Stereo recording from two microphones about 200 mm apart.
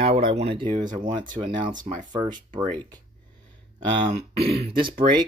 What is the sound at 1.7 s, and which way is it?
Speech, 40° right (ahead or behind).